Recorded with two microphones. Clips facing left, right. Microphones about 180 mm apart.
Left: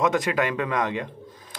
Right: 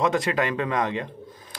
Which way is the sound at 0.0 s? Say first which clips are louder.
Even; centre (ahead or behind).